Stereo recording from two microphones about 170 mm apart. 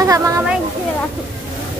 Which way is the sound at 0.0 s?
20° right (ahead or behind).